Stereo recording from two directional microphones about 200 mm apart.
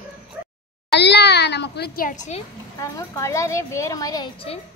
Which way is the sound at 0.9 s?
55° left (ahead or behind).